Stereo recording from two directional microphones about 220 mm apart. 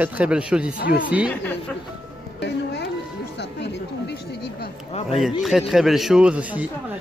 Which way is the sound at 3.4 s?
50° left (ahead or behind).